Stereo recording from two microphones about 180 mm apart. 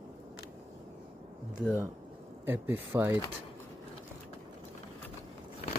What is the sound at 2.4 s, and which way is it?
Speech, 10° right (ahead or behind).